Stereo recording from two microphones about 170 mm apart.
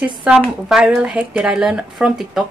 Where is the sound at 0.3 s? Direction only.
5° right (ahead or behind).